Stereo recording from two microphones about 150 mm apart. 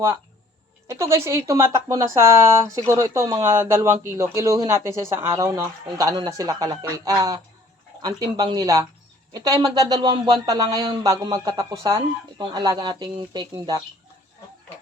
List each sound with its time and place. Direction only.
0.9 s speech: 20° right (ahead or behind)